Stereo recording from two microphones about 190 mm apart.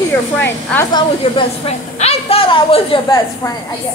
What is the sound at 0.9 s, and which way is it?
A woman's voice, 30° left (ahead or behind).